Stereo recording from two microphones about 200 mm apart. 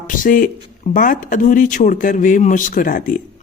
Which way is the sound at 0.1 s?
40° left (ahead or behind).